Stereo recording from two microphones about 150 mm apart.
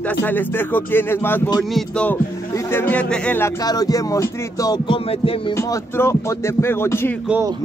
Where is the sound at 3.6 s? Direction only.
25° left (ahead or behind).